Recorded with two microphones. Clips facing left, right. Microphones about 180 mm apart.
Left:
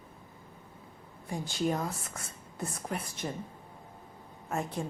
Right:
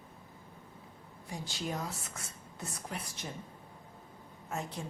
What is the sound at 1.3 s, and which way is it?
Speech, 50° left (ahead or behind).